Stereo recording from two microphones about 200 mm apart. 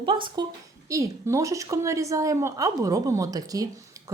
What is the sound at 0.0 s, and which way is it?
A woman's voice, 25° right (ahead or behind).